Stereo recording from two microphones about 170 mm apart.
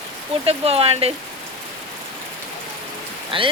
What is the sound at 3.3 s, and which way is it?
Speech, 30° right (ahead or behind).